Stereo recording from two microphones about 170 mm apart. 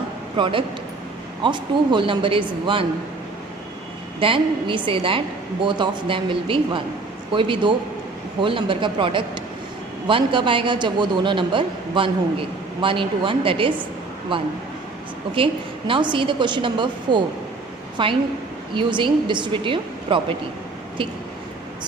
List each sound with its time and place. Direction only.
0.3 s a man's voice: 30° right (ahead or behind)
4.2 s a woman's voice: 30° right (ahead or behind)
15.9 s a man's voice: 30° right (ahead or behind)